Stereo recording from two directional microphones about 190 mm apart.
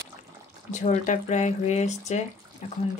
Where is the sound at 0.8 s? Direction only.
40° left (ahead or behind).